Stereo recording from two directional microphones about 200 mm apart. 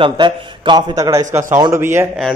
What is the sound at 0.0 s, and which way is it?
A man's voice, 25° right (ahead or behind).